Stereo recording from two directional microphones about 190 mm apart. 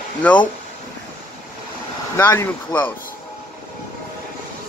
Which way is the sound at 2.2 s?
10° left (ahead or behind).